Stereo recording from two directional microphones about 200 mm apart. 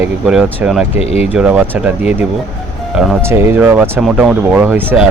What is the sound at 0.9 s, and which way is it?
Speech, 30° left (ahead or behind).